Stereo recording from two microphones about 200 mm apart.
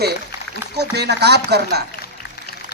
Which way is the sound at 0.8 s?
55° right (ahead or behind).